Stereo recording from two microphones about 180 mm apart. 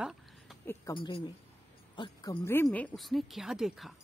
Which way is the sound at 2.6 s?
5° left (ahead or behind).